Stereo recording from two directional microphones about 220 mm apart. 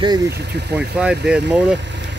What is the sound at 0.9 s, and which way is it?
Speech, 5° right (ahead or behind).